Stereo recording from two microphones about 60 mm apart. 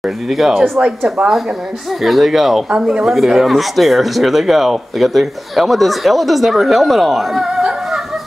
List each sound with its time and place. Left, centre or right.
0.3 s speech: centre
0.7 s speech: centre
2.0 s speech: centre